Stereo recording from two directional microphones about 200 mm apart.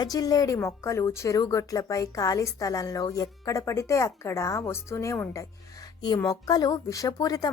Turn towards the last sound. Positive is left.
turn(degrees=20)  # may be behind; listen again after turning